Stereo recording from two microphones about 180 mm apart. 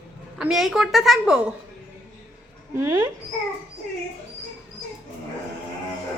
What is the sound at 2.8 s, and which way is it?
Speech, 15° right (ahead or behind).